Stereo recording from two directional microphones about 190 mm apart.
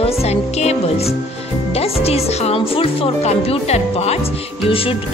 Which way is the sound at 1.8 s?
30° left (ahead or behind).